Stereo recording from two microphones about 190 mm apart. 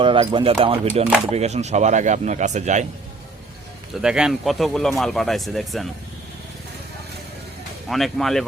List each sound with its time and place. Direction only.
0.0 s speech: 25° right (ahead or behind)
4.0 s speech: 5° right (ahead or behind)
7.9 s speech: centre (ahead or behind)